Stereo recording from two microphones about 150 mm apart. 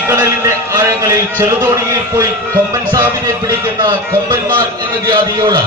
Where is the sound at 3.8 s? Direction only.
30° right (ahead or behind).